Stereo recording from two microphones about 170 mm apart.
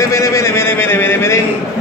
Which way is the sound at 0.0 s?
20° left (ahead or behind).